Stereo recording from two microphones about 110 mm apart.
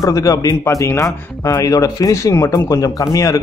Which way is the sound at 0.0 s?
30° left (ahead or behind).